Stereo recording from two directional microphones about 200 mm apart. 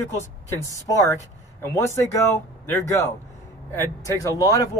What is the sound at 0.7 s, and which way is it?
Speech, 15° left (ahead or behind).